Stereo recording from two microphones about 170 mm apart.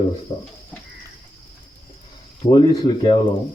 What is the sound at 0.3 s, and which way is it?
Speech, 25° left (ahead or behind).